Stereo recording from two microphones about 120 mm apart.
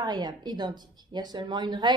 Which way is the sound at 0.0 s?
35° right (ahead or behind).